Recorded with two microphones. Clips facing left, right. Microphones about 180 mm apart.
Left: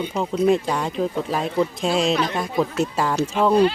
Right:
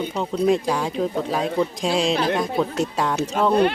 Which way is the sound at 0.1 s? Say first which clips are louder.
Left 2 dB; 5° left (ahead or behind).